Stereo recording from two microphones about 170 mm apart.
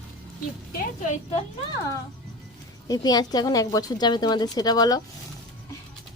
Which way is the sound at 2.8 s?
20° left (ahead or behind).